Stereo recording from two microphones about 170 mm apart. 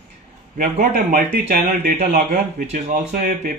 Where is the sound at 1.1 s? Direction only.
55° right (ahead or behind).